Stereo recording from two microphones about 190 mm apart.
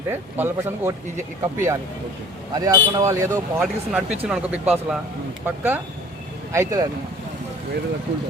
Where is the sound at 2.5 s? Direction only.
20° right (ahead or behind).